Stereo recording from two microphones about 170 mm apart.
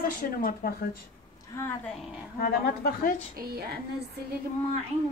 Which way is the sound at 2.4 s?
65° left (ahead or behind).